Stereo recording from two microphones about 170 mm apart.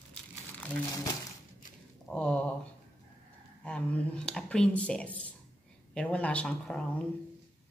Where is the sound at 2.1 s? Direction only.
5° left (ahead or behind).